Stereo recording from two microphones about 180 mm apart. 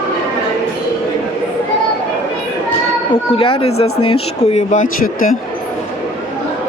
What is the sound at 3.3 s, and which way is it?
Speech, 30° left (ahead or behind).